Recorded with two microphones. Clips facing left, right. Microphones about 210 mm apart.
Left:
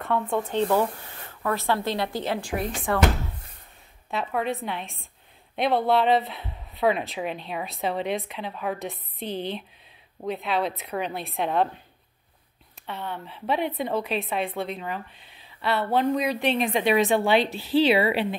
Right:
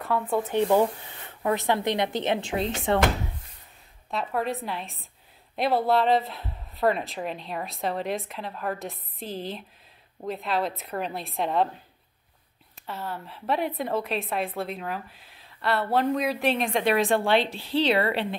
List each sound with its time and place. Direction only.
0.3 s speech: 10° right (ahead or behind); by 3.0 s 25° right (ahead or behind)
4.1 s a woman's voice: centre (ahead or behind)
12.8 s a woman's voice: centre (ahead or behind)